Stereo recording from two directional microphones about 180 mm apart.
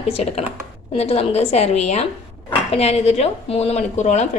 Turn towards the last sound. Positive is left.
turn(degrees=40)  # may be behind; listen again after turning